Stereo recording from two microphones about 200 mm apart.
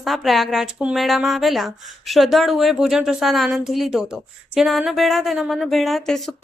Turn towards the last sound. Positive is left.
turn(degrees=0)  # may be behind; listen again after turning